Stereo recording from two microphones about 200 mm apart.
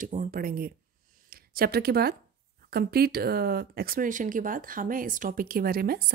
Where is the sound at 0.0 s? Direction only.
40° right (ahead or behind).